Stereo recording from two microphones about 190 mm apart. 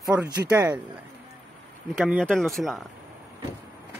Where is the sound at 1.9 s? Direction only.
Centre (ahead or behind).